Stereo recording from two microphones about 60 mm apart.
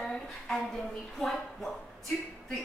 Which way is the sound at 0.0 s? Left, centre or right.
Centre.